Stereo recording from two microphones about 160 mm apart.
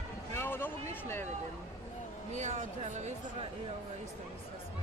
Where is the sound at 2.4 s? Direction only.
50° right (ahead or behind).